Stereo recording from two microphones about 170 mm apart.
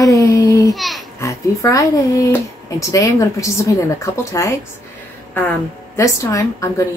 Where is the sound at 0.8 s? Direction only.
Centre (ahead or behind).